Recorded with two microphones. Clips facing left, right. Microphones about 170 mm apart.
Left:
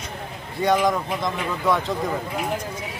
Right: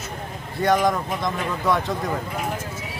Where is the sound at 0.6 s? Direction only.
Centre (ahead or behind).